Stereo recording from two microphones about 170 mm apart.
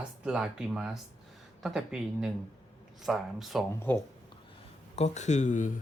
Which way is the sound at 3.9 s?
10° left (ahead or behind).